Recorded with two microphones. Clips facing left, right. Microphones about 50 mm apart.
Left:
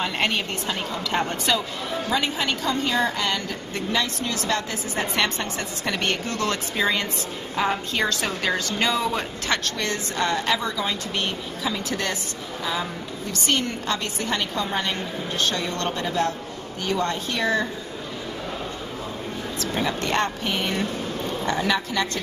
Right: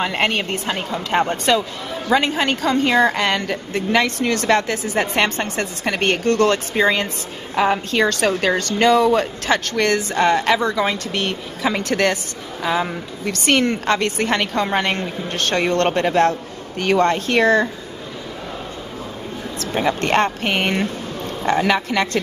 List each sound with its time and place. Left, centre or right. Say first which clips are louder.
0.0 s a woman's voice: right 4 dB; right
2.0 s a woman's voice: right 8 dB; right
12.6 s a woman's voice: right 7 dB; right
19.7 s a woman's voice: right 6 dB; right
20.0 s a woman's voice: right 6 dB; right